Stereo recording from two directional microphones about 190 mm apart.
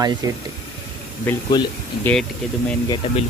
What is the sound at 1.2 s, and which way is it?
Speech, 20° left (ahead or behind).